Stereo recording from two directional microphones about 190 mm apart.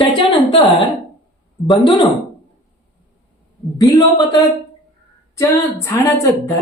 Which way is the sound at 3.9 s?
20° left (ahead or behind).